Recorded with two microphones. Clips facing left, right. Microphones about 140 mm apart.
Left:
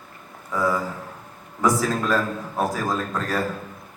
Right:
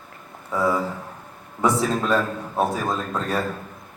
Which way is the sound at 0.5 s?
25° right (ahead or behind).